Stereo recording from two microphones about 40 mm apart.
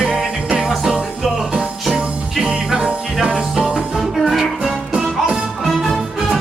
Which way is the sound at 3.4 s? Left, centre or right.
Centre.